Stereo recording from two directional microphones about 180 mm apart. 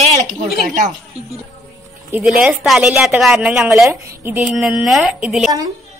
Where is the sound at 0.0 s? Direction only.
40° right (ahead or behind).